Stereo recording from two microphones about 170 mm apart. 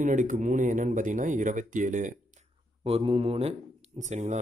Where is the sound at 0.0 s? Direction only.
50° right (ahead or behind).